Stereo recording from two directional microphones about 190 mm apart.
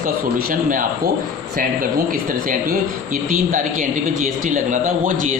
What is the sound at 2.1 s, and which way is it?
Speech, 45° right (ahead or behind).